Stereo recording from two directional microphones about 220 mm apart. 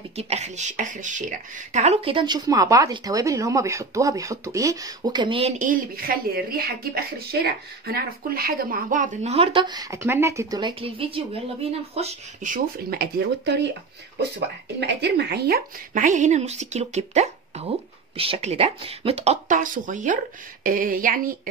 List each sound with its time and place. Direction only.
0.1 s a woman's voice: 30° right (ahead or behind); by 13.7 s 50° right (ahead or behind)
14.8 s a woman's voice: 50° right (ahead or behind)